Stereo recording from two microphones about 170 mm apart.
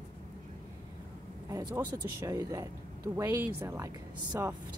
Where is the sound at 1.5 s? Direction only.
25° right (ahead or behind).